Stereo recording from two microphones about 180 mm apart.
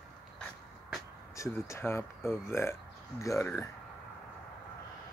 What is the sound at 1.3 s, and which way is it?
Speech, 15° left (ahead or behind).